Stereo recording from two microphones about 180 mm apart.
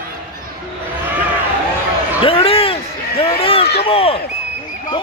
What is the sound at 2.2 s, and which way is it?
Basketball bounce, 30° left (ahead or behind).